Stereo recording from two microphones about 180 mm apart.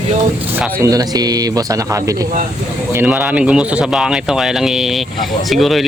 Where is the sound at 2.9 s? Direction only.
10° right (ahead or behind).